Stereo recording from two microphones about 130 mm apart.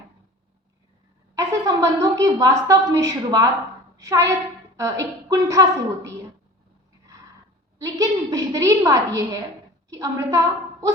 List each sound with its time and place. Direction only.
1.4 s a woman's voice: 25° right (ahead or behind)
3.9 s a sound: 25° right (ahead or behind)
4.8 s a woman's voice: 25° right (ahead or behind)
7.8 s a woman's voice: 25° right (ahead or behind)